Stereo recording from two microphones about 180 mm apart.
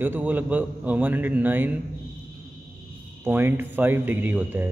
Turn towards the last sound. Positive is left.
turn(degrees=-10)  # may be behind; listen again after turning